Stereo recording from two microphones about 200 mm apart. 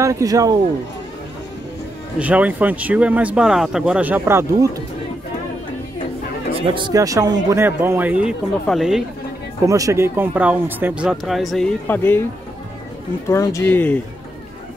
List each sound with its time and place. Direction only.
0.0 s speech: 15° right (ahead or behind)
2.1 s speech: 5° right (ahead or behind)
6.7 s speech: 20° right (ahead or behind); by 9.0 s centre (ahead or behind)
9.7 s speech: 15° right (ahead or behind); by 12.2 s 10° left (ahead or behind)
13.3 s speech: 15° left (ahead or behind)